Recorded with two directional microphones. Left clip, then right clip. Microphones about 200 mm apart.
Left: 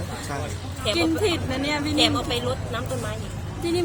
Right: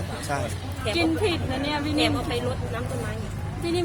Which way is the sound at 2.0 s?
50° left (ahead or behind).